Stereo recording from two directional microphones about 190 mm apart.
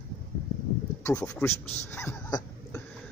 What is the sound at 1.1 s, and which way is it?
Speech, 5° left (ahead or behind).